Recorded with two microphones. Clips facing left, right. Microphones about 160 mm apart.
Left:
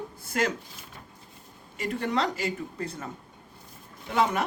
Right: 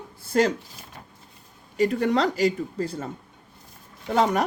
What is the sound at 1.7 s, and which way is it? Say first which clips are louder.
Speech: right 7 dB; 35° right (ahead or behind).